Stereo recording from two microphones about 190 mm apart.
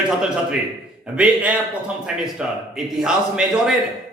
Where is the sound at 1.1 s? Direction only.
5° right (ahead or behind).